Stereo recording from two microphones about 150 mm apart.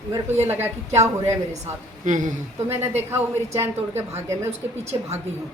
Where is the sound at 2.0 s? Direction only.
55° right (ahead or behind).